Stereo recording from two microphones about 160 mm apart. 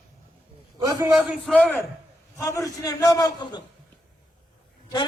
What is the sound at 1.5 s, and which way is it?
A man's voice, 10° left (ahead or behind).